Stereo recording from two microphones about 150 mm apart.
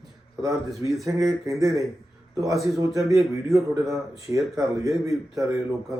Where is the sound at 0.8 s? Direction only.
20° right (ahead or behind).